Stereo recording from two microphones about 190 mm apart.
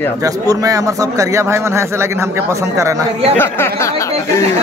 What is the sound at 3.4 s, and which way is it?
Speech, 10° left (ahead or behind).